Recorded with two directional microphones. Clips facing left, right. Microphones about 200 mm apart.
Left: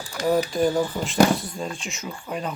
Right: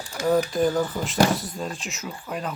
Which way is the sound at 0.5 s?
Centre (ahead or behind).